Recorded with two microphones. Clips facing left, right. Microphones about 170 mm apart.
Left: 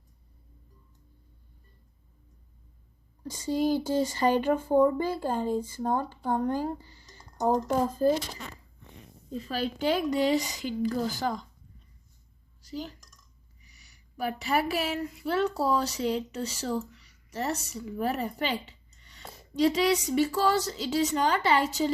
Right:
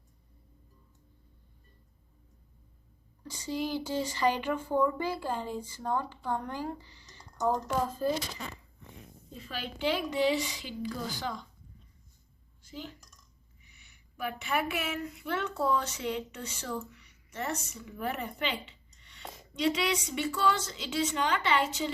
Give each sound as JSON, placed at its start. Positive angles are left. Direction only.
{"t": 3.2, "sound": "speech", "side_deg": 45}
{"t": 9.4, "sound": "speech", "side_deg": 40}
{"t": 12.6, "sound": "speech", "side_deg": 40}
{"t": 17.0, "sound": "a sound", "side_deg": 35}
{"t": 17.7, "sound": "speech", "side_deg": 35}